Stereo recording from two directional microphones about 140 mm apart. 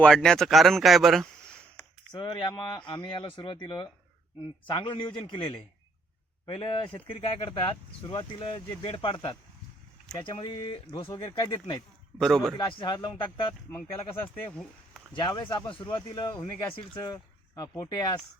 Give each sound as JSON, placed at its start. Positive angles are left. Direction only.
{"t": 0.0, "sound": "speech", "side_deg": 5}
{"t": 2.1, "sound": "speech", "side_deg": 30}
{"t": 12.2, "sound": "speech", "side_deg": 5}
{"t": 12.5, "sound": "speech", "side_deg": 35}
{"t": 14.5, "sound": "a sound", "side_deg": 5}
{"t": 15.1, "sound": "speech", "side_deg": 30}